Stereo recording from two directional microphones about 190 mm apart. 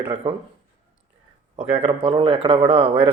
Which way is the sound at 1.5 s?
25° right (ahead or behind).